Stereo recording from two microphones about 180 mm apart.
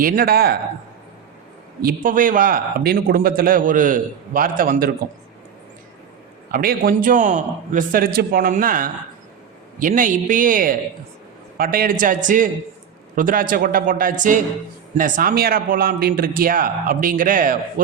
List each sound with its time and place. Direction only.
0.0 s speech: 55° right (ahead or behind)
1.8 s a man's voice: 50° right (ahead or behind)
6.5 s a man's voice: 55° right (ahead or behind)